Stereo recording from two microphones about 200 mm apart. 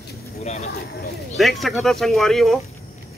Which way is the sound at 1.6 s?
Centre (ahead or behind).